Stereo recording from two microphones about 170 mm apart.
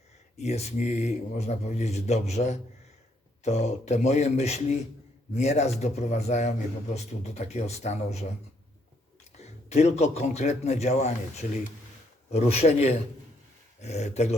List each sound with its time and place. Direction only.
0.3 s speech: 40° left (ahead or behind)
9.6 s speech: 40° left (ahead or behind)